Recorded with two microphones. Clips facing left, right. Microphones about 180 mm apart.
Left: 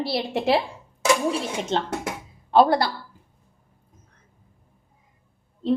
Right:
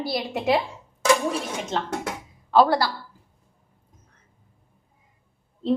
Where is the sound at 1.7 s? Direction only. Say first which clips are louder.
Left 1 dB; 30° left (ahead or behind).